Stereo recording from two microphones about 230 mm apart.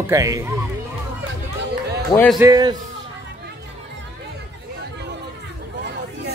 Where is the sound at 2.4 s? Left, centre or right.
Centre.